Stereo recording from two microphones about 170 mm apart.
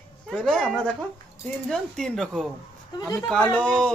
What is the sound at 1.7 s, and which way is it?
Speech, 5° left (ahead or behind).